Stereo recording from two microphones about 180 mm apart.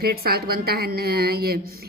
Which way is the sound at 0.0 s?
60° right (ahead or behind).